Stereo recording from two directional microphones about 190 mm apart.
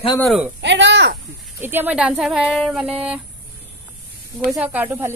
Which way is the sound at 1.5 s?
10° right (ahead or behind).